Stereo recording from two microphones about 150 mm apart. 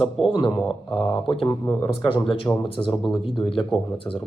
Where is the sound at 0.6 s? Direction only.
Centre (ahead or behind).